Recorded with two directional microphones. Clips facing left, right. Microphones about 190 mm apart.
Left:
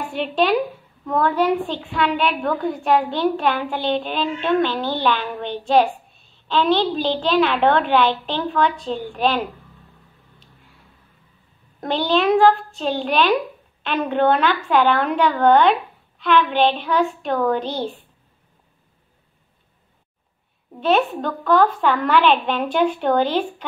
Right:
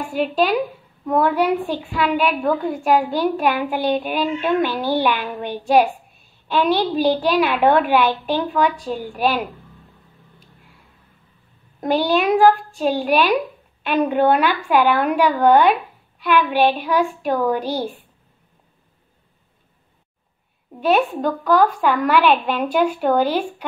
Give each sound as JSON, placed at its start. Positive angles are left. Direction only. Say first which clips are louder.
{"t": 0.1, "sound": "a woman's voice", "louder": "right 1 dB", "side_deg": -5}
{"t": 1.0, "sound": "a woman's voice", "louder": "right 1 dB", "side_deg": -15}
{"t": 2.0, "sound": "a woman's voice", "louder": "right 3 dB", "side_deg": -5}
{"t": 11.8, "sound": "a woman's voice", "louder": "right 1 dB", "side_deg": -15}
{"t": 21.3, "sound": "a woman's voice", "louder": "even", "side_deg": -10}